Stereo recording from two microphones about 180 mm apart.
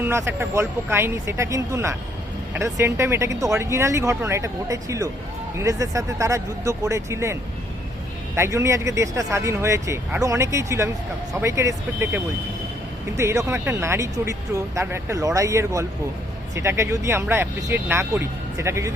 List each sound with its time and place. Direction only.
0.0 s speech: 15° right (ahead or behind)
8.4 s speech: 15° right (ahead or behind)